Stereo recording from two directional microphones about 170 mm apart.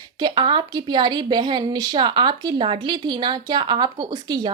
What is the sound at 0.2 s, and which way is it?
A woman's voice, 30° right (ahead or behind).